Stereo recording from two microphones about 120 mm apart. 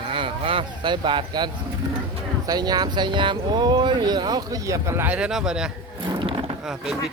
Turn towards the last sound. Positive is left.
turn(degrees=-5)  # may be behind; listen again after turning